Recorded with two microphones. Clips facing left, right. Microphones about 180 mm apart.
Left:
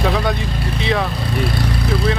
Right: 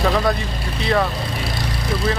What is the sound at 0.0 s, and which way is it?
Speech, centre (ahead or behind).